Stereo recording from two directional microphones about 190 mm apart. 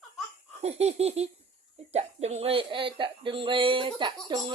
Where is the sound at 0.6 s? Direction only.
35° right (ahead or behind).